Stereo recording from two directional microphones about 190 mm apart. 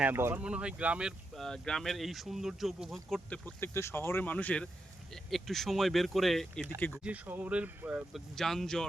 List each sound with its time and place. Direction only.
0.0 s speech: 10° right (ahead or behind); by 7.0 s 10° left (ahead or behind)
7.0 s speech: 10° right (ahead or behind)